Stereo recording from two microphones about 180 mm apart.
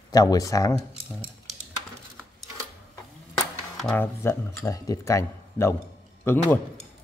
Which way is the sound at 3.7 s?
5° left (ahead or behind).